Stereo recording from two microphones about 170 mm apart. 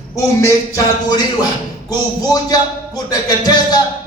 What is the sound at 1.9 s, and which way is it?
Speech, 20° left (ahead or behind).